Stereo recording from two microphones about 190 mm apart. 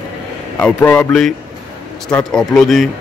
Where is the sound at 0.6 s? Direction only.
10° left (ahead or behind).